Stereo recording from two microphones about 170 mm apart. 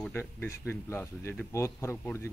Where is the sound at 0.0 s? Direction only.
15° left (ahead or behind).